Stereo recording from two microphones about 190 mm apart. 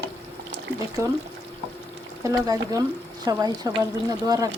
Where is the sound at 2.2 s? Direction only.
15° right (ahead or behind).